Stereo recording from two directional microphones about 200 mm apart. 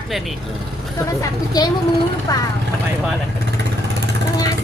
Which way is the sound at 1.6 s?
20° left (ahead or behind).